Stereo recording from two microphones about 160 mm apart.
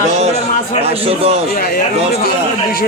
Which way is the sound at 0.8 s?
40° right (ahead or behind).